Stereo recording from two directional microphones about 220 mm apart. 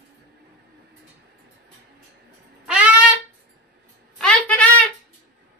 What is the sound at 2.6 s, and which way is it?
Wind instrument, 5° right (ahead or behind).